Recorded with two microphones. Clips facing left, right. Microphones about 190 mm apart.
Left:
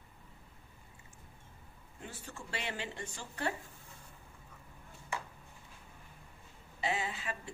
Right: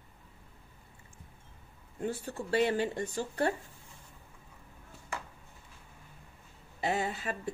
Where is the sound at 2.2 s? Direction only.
40° right (ahead or behind).